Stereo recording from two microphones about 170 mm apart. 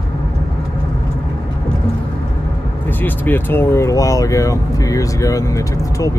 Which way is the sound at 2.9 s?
10° left (ahead or behind).